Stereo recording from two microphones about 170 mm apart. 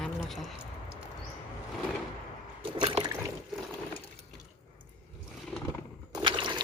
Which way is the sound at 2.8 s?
30° right (ahead or behind).